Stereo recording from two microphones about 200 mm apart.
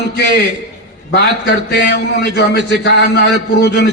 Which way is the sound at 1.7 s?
55° left (ahead or behind).